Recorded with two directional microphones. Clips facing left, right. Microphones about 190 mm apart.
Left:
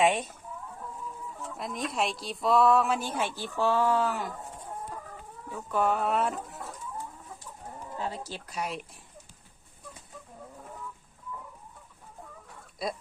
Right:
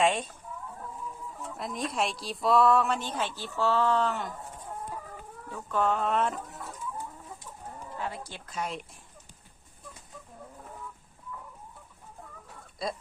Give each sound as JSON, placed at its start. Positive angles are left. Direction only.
{"t": 0.0, "sound": "speech", "side_deg": 10}
{"t": 1.5, "sound": "a woman's voice", "side_deg": 0}
{"t": 5.5, "sound": "speech", "side_deg": 10}
{"t": 7.9, "sound": "speech", "side_deg": 40}
{"t": 8.5, "sound": "speech", "side_deg": 5}